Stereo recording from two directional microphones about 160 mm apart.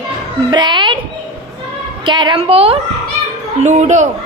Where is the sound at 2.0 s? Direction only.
30° right (ahead or behind); by 4.1 s 45° right (ahead or behind).